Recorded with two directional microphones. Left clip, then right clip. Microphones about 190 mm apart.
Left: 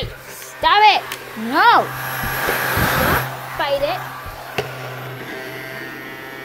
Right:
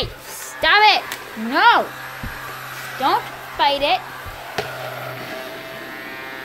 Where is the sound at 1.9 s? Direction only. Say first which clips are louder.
Left 7 dB; 50° left (ahead or behind).